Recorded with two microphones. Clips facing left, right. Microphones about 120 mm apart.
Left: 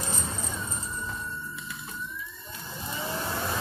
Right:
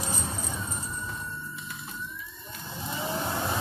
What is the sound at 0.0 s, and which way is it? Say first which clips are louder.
Vehicle: right 1 dB; 15° right (ahead or behind).